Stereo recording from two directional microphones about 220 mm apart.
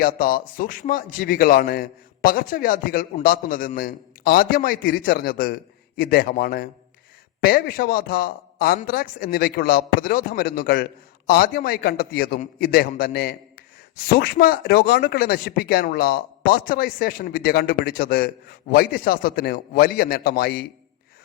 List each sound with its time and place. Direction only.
0.0 s a man's voice: 40° left (ahead or behind)